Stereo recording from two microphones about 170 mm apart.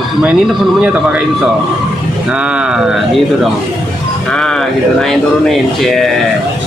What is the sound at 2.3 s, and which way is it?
Speech, 5° right (ahead or behind).